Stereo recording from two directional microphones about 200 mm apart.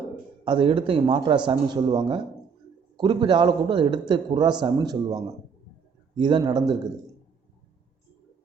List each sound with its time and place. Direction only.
0.4 s a man's voice: 25° right (ahead or behind)